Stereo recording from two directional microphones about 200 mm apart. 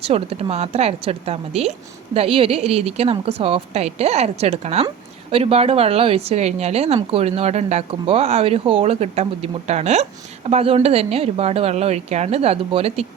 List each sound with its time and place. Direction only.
0.0 s speech: 30° right (ahead or behind)